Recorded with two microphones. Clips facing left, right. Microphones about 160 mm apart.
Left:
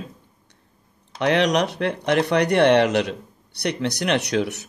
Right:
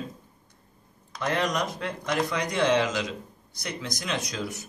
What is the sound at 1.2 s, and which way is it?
Speech, 75° left (ahead or behind).